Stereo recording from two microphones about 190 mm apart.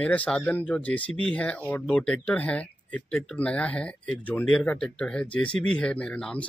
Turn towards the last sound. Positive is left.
turn(degrees=5)  # may be behind; listen again after turning